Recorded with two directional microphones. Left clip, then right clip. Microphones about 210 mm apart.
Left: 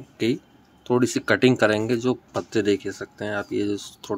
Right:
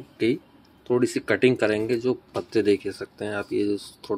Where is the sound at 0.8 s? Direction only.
20° left (ahead or behind).